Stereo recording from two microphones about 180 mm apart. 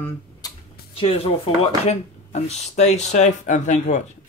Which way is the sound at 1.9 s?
35° left (ahead or behind).